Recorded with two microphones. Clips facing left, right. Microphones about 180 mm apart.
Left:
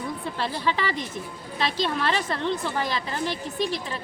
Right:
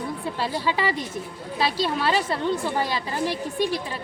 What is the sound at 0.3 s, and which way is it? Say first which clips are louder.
Speech: right 1 dB; 5° right (ahead or behind).